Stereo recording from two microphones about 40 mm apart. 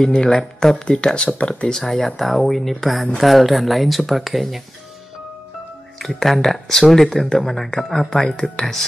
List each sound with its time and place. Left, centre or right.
0.0 s speech: centre
1.7 s speech: centre
5.9 s speech: centre